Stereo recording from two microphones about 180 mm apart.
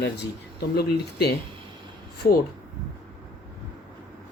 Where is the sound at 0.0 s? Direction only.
65° left (ahead or behind).